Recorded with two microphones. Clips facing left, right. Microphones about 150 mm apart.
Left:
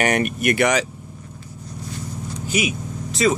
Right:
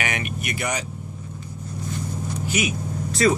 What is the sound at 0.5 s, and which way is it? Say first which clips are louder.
Speech: left 8 dB; 90° left.